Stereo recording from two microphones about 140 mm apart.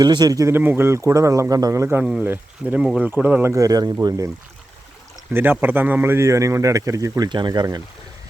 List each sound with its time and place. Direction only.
0.0 s speech: 30° right (ahead or behind); by 3.5 s 10° right (ahead or behind)
3.5 s speech: 25° right (ahead or behind)
5.3 s speech: 15° right (ahead or behind); by 7.8 s 30° right (ahead or behind)